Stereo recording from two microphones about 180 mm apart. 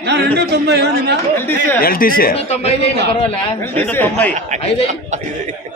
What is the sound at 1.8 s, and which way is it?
Speech, 55° left (ahead or behind).